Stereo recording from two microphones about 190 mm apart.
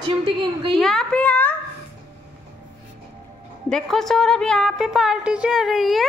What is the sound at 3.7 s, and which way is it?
A woman's voice, centre (ahead or behind).